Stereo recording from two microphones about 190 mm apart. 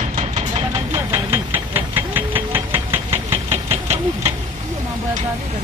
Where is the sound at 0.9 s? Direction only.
10° right (ahead or behind).